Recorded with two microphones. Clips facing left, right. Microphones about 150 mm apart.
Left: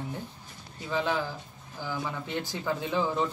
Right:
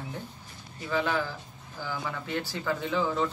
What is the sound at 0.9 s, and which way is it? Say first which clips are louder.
Speech: right 1 dB; 15° left (ahead or behind).